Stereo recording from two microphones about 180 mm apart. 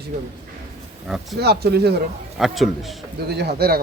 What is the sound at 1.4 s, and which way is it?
Speech, 65° right (ahead or behind).